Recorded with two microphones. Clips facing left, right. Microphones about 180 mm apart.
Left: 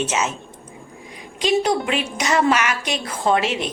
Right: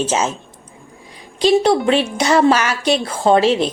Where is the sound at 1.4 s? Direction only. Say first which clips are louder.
Right 6 dB; 30° right (ahead or behind).